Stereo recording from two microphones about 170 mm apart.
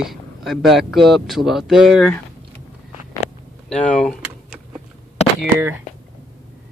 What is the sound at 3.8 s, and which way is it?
Door, 5° left (ahead or behind).